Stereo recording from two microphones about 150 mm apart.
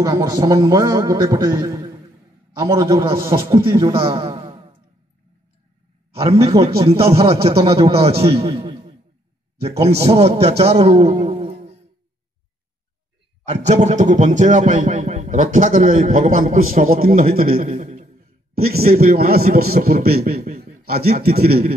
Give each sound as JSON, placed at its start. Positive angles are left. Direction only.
{"t": 0.0, "sound": "a man's voice", "side_deg": -25}
{"t": 6.8, "sound": "a man's voice", "side_deg": -40}
{"t": 11.1, "sound": "a sound", "side_deg": -40}
{"t": 13.5, "sound": "a man's voice", "side_deg": -50}
{"t": 17.7, "sound": "a sound", "side_deg": -55}
{"t": 18.5, "sound": "a man's voice", "side_deg": -90}